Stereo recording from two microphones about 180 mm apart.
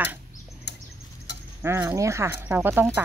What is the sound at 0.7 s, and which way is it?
Bird, 70° left (ahead or behind).